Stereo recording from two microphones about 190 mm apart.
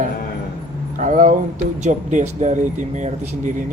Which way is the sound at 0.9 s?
40° right (ahead or behind).